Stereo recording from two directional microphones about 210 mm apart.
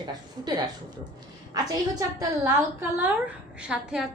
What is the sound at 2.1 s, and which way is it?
A woman's voice, 10° right (ahead or behind).